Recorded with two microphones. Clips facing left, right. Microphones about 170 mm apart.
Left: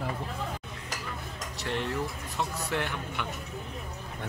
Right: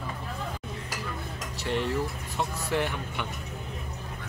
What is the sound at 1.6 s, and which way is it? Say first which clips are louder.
Speech: right 3 dB; centre (ahead or behind).